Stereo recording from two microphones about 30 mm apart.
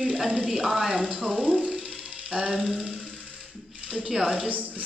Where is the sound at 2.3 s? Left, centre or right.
Right.